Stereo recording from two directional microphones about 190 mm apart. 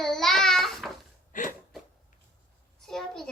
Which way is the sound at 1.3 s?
45° left (ahead or behind).